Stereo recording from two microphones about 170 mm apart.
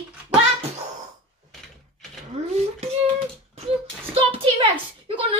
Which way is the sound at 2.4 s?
40° right (ahead or behind).